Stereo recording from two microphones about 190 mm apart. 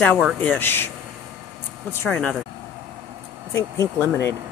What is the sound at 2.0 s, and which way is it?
Speech, 10° left (ahead or behind).